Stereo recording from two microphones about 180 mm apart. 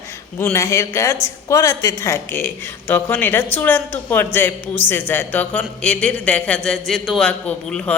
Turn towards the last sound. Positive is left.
turn(degrees=5)  # may be behind; listen again after turning